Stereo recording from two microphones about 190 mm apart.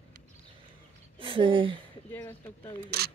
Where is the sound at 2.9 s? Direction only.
55° right (ahead or behind).